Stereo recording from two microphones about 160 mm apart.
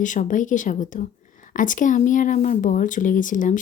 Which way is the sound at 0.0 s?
50° left (ahead or behind).